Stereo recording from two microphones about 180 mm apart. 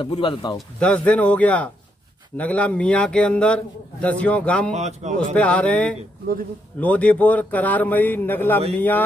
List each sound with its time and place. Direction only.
0.0 s speech: 30° left (ahead or behind)
0.6 s a man's voice: 5° left (ahead or behind)
4.7 s a man's voice: 40° right (ahead or behind)
5.3 s a man's voice: 5° left (ahead or behind)